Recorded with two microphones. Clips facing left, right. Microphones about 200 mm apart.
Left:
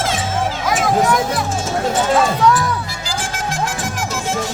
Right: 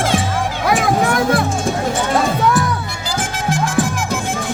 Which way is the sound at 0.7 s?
60° right (ahead or behind).